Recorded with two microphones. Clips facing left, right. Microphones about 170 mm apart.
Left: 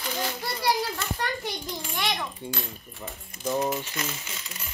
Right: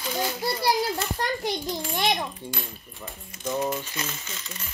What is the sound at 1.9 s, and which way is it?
Speech, 25° right (ahead or behind).